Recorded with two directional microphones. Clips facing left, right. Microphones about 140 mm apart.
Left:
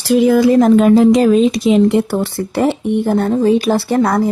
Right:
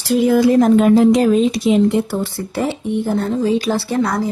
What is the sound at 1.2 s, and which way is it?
Speech, 90° left.